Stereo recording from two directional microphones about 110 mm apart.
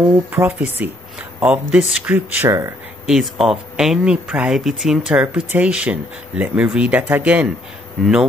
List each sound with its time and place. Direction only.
0.3 s speech: 20° right (ahead or behind)
3.1 s speech: centre (ahead or behind)